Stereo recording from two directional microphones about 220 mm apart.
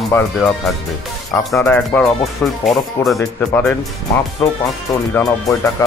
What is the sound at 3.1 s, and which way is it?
Speech, 10° left (ahead or behind).